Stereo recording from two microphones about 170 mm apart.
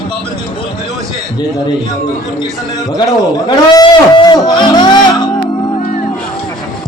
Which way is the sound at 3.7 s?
25° left (ahead or behind).